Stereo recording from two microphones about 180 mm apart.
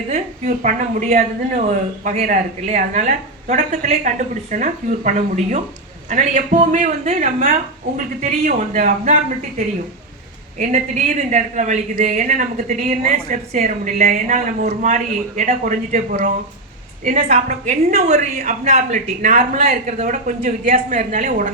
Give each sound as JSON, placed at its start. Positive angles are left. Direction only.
{"t": 0.1, "sound": "a man's voice", "side_deg": -45}